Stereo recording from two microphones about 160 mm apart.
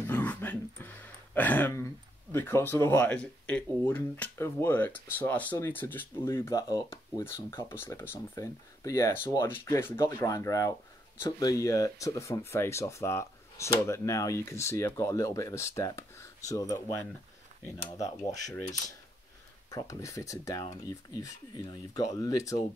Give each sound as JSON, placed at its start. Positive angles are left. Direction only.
{"t": 0.0, "sound": "dog", "side_deg": 10}
{"t": 1.3, "sound": "speech", "side_deg": 10}
{"t": 19.7, "sound": "speech", "side_deg": 20}